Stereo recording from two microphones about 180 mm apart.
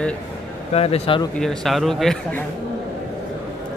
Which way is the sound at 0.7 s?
35° left (ahead or behind).